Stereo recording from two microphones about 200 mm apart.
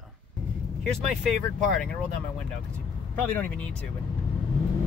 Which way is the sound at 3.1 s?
5° left (ahead or behind).